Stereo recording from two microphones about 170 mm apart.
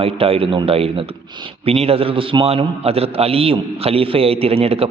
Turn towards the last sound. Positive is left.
turn(degrees=-35)  # may be behind; listen again after turning